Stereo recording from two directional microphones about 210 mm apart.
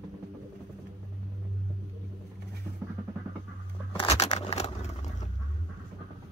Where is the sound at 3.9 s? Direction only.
25° left (ahead or behind).